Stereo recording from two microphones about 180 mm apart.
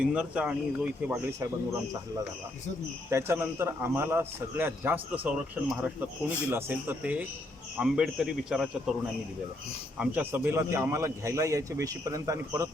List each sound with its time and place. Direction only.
0.0 s a man's voice: 5° right (ahead or behind)
3.1 s a man's voice: 15° right (ahead or behind)
10.0 s a man's voice: 10° right (ahead or behind)